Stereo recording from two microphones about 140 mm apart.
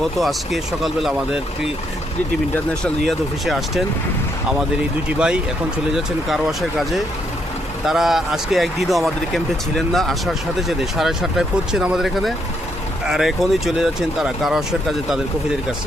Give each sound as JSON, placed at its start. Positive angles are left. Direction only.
{"t": 0.0, "sound": "speech", "side_deg": 0}
{"t": 2.8, "sound": "speech", "side_deg": 0}
{"t": 5.0, "sound": "speech", "side_deg": -5}